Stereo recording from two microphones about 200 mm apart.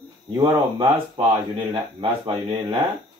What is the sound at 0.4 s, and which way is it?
Speech, 20° right (ahead or behind).